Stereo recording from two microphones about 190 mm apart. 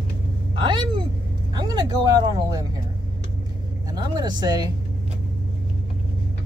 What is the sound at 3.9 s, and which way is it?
Speech, 20° right (ahead or behind).